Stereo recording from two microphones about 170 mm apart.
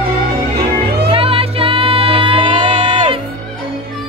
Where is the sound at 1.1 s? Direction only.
35° right (ahead or behind).